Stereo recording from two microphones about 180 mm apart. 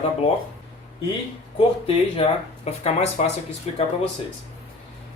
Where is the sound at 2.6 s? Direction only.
35° left (ahead or behind).